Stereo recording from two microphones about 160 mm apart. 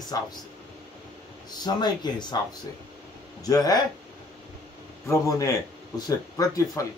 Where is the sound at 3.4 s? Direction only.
25° left (ahead or behind).